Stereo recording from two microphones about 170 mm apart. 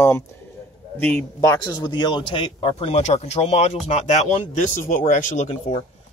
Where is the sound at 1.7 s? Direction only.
25° left (ahead or behind).